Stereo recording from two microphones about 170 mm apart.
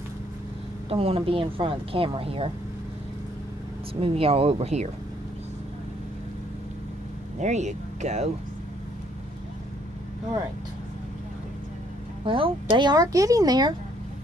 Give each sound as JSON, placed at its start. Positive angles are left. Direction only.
{"t": 0.8, "sound": "speech", "side_deg": -35}
{"t": 4.0, "sound": "speech", "side_deg": -35}
{"t": 7.3, "sound": "speech", "side_deg": -45}
{"t": 12.3, "sound": "a woman's voice", "side_deg": -30}